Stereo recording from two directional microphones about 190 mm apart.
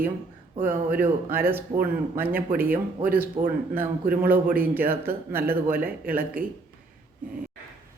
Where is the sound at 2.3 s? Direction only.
50° right (ahead or behind).